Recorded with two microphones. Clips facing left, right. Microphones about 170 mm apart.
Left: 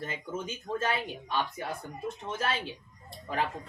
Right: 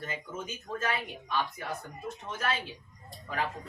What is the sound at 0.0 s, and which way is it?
Speech, 30° left (ahead or behind).